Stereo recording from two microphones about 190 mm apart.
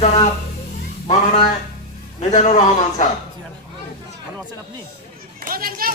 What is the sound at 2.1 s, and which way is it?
Speech, 35° left (ahead or behind).